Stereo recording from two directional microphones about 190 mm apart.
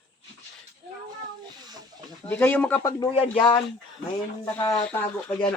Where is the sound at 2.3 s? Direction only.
10° left (ahead or behind).